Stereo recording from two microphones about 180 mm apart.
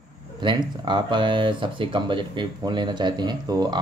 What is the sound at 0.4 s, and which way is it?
Speech, 25° right (ahead or behind).